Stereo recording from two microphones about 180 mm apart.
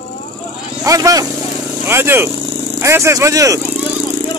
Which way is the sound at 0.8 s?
20° right (ahead or behind).